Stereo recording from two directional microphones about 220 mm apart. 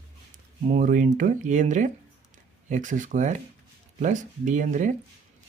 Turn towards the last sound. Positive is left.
turn(degrees=-35)  # may be behind; listen again after turning